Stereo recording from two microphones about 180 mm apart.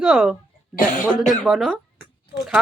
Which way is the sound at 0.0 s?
Centre (ahead or behind).